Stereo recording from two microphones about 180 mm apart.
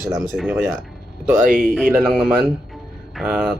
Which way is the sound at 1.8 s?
Centre (ahead or behind).